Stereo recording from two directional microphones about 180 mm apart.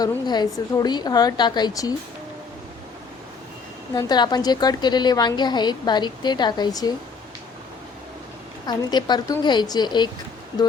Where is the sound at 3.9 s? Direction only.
20° left (ahead or behind).